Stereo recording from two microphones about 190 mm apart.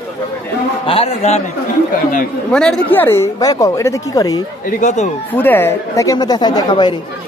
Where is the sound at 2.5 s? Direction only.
5° left (ahead or behind).